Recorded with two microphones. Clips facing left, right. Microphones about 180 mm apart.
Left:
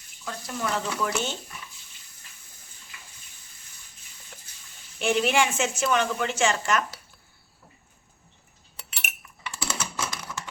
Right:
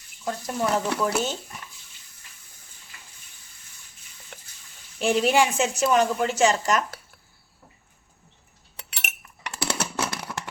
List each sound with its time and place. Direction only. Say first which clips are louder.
0.3 s a woman's voice: right 5 dB; 35° right (ahead or behind)
4.3 s sizzle: right 4 dB; 65° right (ahead or behind)
4.9 s a woman's voice: right 3 dB; 35° right (ahead or behind)
8.9 s dishes: right 1 dB; 65° right (ahead or behind)